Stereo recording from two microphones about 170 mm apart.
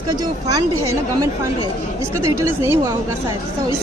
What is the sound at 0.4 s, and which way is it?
Speech, 20° right (ahead or behind).